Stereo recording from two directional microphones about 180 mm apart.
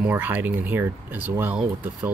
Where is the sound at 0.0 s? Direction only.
10° right (ahead or behind).